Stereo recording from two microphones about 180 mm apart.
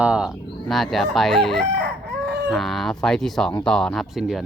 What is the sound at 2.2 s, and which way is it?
Chicken, 70° right (ahead or behind).